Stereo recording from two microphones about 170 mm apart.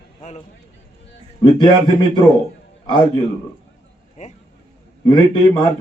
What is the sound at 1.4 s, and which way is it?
Speech, 25° left (ahead or behind).